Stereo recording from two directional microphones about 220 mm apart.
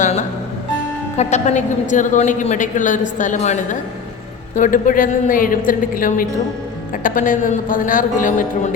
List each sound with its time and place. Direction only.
0.0 s music: 35° left (ahead or behind)
1.1 s a woman's voice: 30° left (ahead or behind)